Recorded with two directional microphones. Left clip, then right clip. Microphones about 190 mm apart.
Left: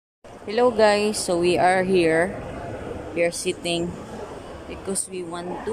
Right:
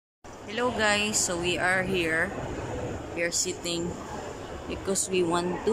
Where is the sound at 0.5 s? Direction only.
25° left (ahead or behind).